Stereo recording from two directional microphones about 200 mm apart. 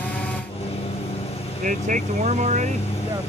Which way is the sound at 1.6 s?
40° right (ahead or behind).